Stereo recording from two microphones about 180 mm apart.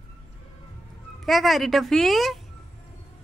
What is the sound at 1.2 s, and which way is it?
A woman's voice, centre (ahead or behind).